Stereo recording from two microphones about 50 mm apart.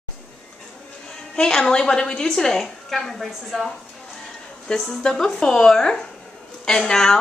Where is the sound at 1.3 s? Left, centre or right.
Centre.